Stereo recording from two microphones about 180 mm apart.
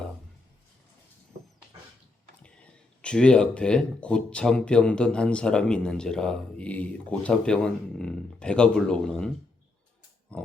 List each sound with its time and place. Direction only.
3.0 s speech: 5° left (ahead or behind)
10.3 s pig: 5° left (ahead or behind)